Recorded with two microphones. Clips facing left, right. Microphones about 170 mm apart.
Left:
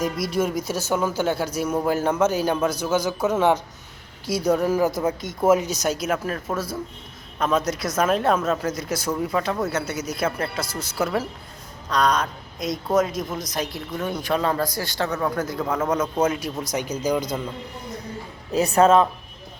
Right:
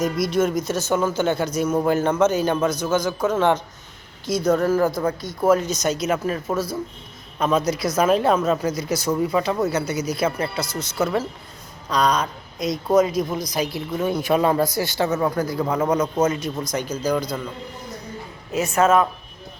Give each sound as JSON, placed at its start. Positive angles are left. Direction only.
{"t": 0.3, "sound": "a man's voice", "side_deg": 10}
{"t": 18.5, "sound": "speech", "side_deg": 35}